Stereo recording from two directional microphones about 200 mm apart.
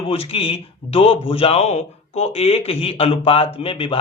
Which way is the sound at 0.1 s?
30° left (ahead or behind).